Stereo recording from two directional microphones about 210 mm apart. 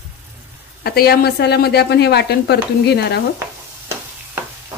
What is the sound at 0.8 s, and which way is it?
A woman's voice, 45° left (ahead or behind).